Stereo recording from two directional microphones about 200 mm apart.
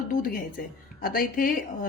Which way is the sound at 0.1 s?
45° left (ahead or behind).